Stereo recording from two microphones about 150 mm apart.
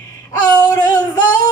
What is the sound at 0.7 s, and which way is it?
Child singing, 25° left (ahead or behind).